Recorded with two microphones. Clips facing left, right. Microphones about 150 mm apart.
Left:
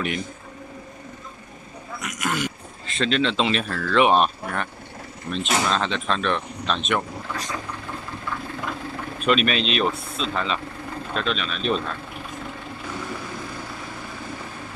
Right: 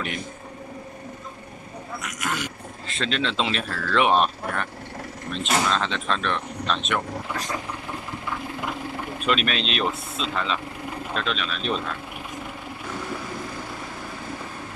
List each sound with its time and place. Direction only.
2.0 s speech: 5° left (ahead or behind)
9.2 s speech: centre (ahead or behind)